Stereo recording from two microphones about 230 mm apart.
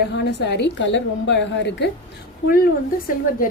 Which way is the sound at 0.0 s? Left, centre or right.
Left.